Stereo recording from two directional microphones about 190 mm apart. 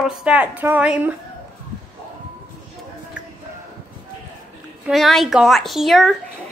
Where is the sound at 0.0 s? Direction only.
5° right (ahead or behind).